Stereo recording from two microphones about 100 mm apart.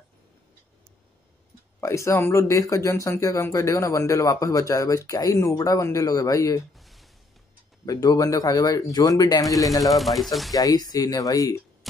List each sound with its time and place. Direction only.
1.8 s speech: 30° left (ahead or behind)
6.8 s a sound: centre (ahead or behind)
7.8 s speech: 40° left (ahead or behind)
9.8 s speech: centre (ahead or behind)
10.5 s speech: 40° left (ahead or behind)